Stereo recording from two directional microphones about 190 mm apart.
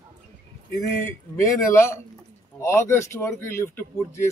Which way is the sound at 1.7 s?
15° left (ahead or behind).